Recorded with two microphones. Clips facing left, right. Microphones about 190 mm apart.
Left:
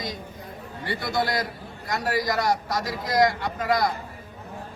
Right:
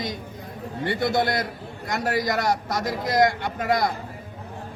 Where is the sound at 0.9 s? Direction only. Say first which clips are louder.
Right 3 dB; 25° right (ahead or behind).